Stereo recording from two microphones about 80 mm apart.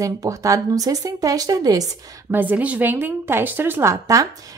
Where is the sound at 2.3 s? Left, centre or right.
Right.